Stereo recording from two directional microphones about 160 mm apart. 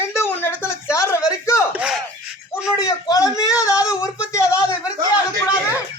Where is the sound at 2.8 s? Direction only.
20° left (ahead or behind).